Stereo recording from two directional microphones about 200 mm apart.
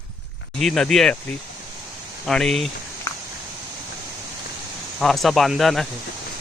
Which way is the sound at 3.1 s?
15° left (ahead or behind).